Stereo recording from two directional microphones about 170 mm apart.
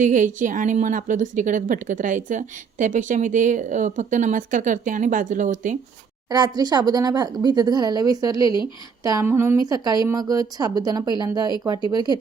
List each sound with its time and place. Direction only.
0.0 s a woman's voice: 50° right (ahead or behind)
6.3 s speech: 25° right (ahead or behind)